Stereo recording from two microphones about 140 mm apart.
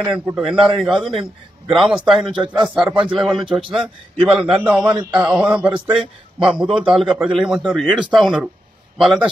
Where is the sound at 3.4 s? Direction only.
35° right (ahead or behind).